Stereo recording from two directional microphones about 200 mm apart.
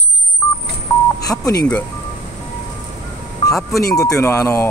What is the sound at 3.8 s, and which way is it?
Speech, 15° left (ahead or behind).